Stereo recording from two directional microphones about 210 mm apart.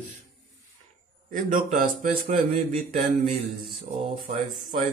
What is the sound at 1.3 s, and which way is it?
Speech, 40° right (ahead or behind).